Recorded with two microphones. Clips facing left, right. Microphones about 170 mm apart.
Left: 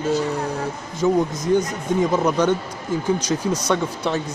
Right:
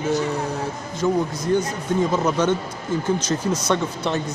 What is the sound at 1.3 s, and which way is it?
Speech, 20° left (ahead or behind).